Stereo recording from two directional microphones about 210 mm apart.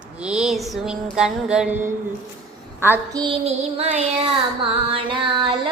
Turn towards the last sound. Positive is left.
turn(degrees=-25)  # may be behind; listen again after turning